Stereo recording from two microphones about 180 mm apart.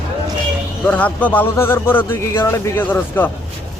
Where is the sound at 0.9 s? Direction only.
10° left (ahead or behind).